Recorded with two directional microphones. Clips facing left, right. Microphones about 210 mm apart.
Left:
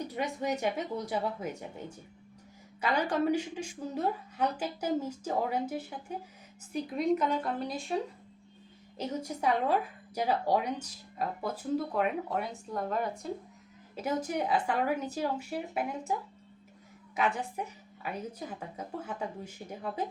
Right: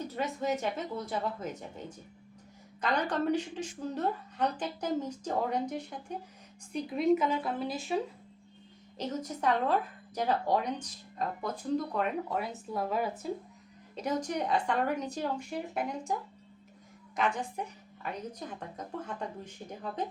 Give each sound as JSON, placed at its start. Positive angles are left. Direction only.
{"t": 0.1, "sound": "a woman's voice", "side_deg": 15}
{"t": 2.8, "sound": "a woman's voice", "side_deg": 10}
{"t": 9.0, "sound": "a woman's voice", "side_deg": 10}
{"t": 13.9, "sound": "speech", "side_deg": 5}
{"t": 17.2, "sound": "a woman's voice", "side_deg": 5}